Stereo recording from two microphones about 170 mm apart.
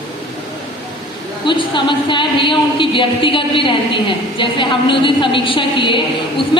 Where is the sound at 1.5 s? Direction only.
30° left (ahead or behind).